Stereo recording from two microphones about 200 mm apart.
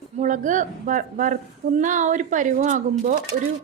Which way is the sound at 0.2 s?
40° right (ahead or behind).